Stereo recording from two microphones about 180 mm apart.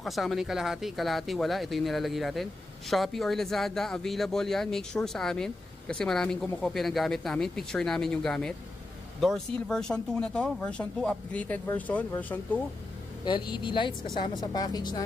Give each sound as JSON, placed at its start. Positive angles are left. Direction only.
{"t": 0.0, "sound": "speech", "side_deg": 0}
{"t": 13.2, "sound": "speech", "side_deg": 25}